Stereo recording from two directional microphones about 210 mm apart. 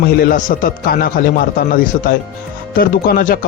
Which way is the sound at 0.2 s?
40° left (ahead or behind).